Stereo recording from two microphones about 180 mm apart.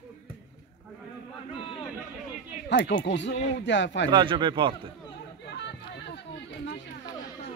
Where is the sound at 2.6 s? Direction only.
75° left (ahead or behind).